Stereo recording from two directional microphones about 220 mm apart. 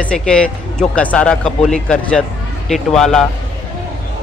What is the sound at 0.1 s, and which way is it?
Speech, 5° left (ahead or behind).